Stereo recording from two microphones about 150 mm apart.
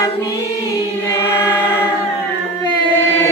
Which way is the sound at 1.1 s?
20° left (ahead or behind).